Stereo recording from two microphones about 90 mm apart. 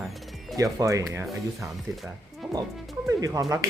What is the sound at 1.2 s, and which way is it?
Speech, centre (ahead or behind).